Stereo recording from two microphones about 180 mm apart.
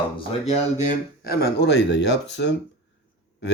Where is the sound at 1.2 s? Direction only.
60° left (ahead or behind).